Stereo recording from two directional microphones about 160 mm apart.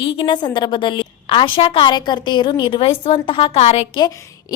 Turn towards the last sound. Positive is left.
turn(degrees=40)  # may be behind; listen again after turning